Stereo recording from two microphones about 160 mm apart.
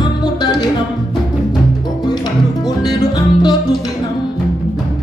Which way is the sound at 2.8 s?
25° left (ahead or behind).